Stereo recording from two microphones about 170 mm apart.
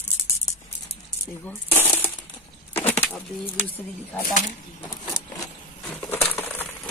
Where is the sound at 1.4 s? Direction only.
10° left (ahead or behind).